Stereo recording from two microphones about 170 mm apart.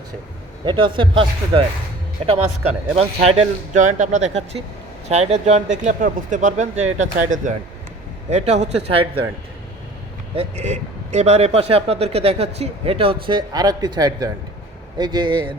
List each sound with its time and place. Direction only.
0.6 s speech: 30° right (ahead or behind)
2.9 s speech: 35° right (ahead or behind)
10.3 s speech: 40° right (ahead or behind)